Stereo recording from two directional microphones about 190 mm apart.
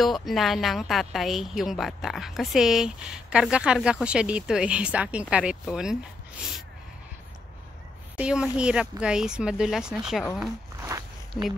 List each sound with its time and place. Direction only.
0.0 s a woman's voice: centre (ahead or behind)
8.2 s a woman's voice: 5° right (ahead or behind)
10.8 s a sound: 15° right (ahead or behind)